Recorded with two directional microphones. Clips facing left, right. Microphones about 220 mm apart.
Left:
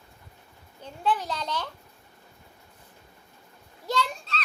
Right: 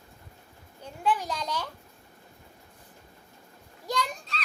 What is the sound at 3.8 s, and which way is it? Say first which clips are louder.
Speech: left 2 dB; 15° right (ahead or behind).